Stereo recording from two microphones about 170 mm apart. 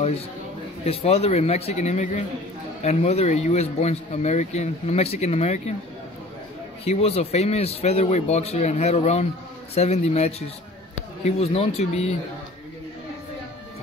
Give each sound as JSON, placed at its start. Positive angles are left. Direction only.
{"t": 0.8, "sound": "speech", "side_deg": 35}
{"t": 6.8, "sound": "speech", "side_deg": 35}